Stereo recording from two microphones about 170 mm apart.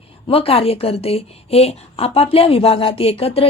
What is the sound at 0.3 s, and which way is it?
A woman's voice, 35° left (ahead or behind).